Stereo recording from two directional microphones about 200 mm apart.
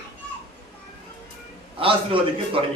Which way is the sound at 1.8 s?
25° right (ahead or behind).